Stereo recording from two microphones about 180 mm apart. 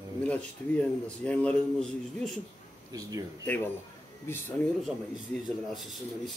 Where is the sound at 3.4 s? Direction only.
10° left (ahead or behind).